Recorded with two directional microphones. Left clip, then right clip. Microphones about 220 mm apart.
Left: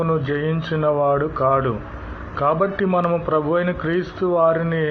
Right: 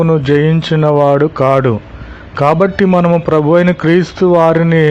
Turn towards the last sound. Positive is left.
turn(degrees=-60)  # may be behind; listen again after turning